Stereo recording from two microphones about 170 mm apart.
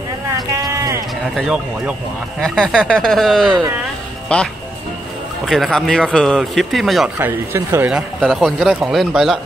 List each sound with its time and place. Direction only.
0.6 s a sound: 20° right (ahead or behind)
1.3 s speech: 5° right (ahead or behind)
7.2 s speech: 15° right (ahead or behind)
8.2 s speech: centre (ahead or behind)